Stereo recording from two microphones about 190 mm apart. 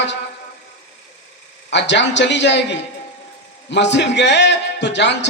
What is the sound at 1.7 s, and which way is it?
Speech, 70° left (ahead or behind).